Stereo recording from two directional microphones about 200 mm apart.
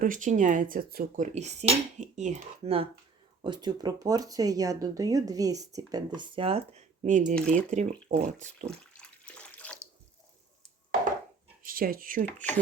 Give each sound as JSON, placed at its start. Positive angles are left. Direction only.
{"t": 0.0, "sound": "speech", "side_deg": -40}
{"t": 8.8, "sound": "bathtub", "side_deg": 5}
{"t": 11.6, "sound": "speech", "side_deg": -45}